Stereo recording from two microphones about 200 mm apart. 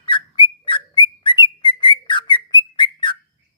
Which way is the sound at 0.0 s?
25° left (ahead or behind).